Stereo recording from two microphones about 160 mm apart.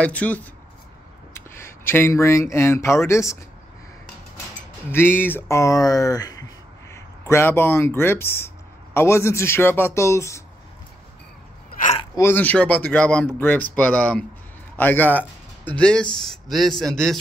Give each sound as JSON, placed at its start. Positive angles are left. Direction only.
{"t": 0.0, "sound": "speech", "side_deg": 10}
{"t": 4.9, "sound": "speech", "side_deg": 15}
{"t": 12.2, "sound": "a man's voice", "side_deg": 15}